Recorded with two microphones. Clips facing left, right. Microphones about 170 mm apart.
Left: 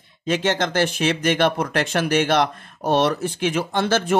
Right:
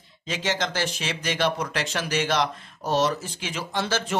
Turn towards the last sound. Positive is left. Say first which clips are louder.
# left 7 dB
turn(degrees=55)  # may be behind; listen again after turning